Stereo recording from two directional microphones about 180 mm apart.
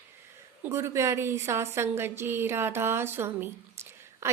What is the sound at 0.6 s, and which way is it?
A woman's voice, 15° right (ahead or behind).